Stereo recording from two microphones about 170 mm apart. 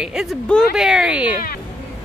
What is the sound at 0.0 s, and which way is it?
Speech, 5° right (ahead or behind).